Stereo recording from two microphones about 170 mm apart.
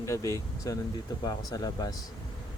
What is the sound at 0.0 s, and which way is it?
Speech, 15° left (ahead or behind).